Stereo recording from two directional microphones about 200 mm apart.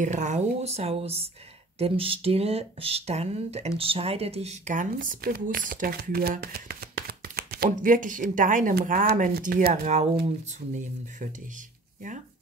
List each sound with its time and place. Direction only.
0.0 s speech: 35° right (ahead or behind)
10.2 s speech: 40° right (ahead or behind)